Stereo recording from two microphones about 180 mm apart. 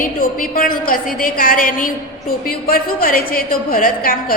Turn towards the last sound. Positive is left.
turn(degrees=55)  # may be behind; listen again after turning